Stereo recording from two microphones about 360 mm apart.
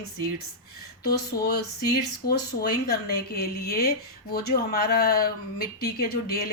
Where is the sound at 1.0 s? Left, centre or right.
Left.